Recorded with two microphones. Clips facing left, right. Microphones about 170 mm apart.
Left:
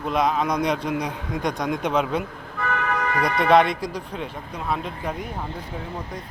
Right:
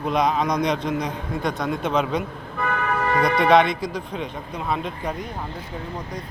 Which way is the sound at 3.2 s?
Centre (ahead or behind).